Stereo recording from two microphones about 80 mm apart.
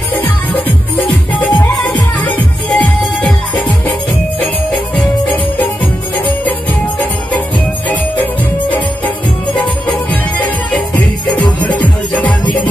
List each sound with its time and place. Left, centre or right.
0.2 s music: left
5.0 s music: left
11.6 s music: left